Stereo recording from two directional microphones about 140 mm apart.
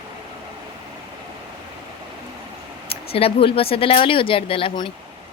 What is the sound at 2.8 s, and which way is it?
Speech, 45° left (ahead or behind).